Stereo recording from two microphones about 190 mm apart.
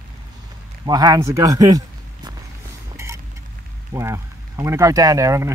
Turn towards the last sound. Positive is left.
turn(degrees=-15)  # may be behind; listen again after turning